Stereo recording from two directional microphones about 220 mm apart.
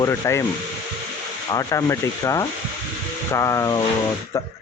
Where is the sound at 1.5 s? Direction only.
15° left (ahead or behind).